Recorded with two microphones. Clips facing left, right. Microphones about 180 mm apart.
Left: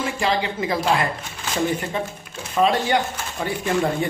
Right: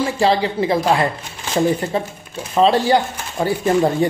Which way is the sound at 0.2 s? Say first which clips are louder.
Right 7 dB; 35° right (ahead or behind).